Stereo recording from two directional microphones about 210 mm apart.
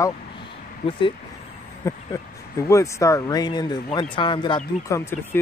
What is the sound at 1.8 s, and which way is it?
A man's voice, 15° left (ahead or behind).